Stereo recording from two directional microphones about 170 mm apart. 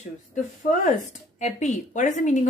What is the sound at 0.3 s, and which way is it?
Speech, 45° left (ahead or behind).